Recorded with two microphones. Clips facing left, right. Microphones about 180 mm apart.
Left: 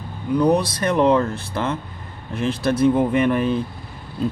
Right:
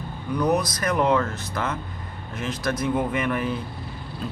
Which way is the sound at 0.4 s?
30° left (ahead or behind).